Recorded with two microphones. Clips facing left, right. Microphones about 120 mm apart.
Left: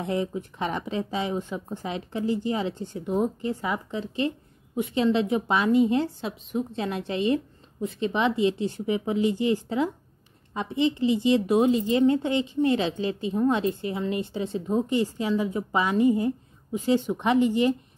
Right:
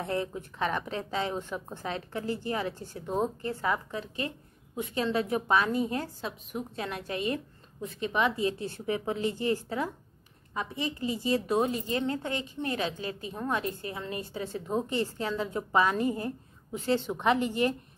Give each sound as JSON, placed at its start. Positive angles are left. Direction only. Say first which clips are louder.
{"t": 0.0, "sound": "a woman's voice", "louder": "left 4 dB", "side_deg": 15}